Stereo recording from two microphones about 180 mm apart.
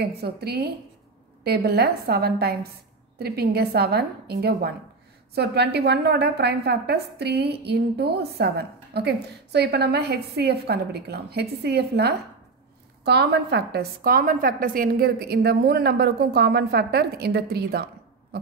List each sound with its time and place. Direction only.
0.0 s a woman's voice: 60° right (ahead or behind)